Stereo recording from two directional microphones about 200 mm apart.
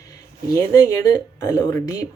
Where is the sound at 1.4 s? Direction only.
15° left (ahead or behind).